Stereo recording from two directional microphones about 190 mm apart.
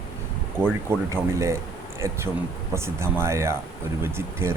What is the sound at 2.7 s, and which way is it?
Speech, 15° right (ahead or behind).